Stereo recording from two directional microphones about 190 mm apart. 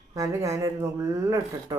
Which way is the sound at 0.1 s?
15° right (ahead or behind).